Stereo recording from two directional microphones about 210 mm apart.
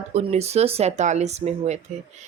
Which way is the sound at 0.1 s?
30° right (ahead or behind).